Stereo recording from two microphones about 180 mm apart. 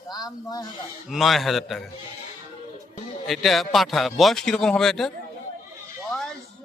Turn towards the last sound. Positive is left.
turn(degrees=0)  # may be behind; listen again after turning